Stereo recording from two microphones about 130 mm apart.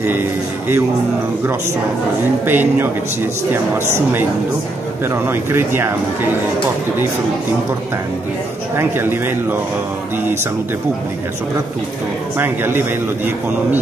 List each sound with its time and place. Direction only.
0.0 s a man's voice: 15° right (ahead or behind)
2.4 s a man's voice: 15° right (ahead or behind)
8.7 s a man's voice: 15° right (ahead or behind)
12.4 s a man's voice: 15° right (ahead or behind)